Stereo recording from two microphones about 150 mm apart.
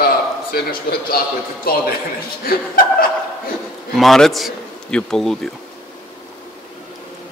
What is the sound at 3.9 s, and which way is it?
A man's voice, centre (ahead or behind).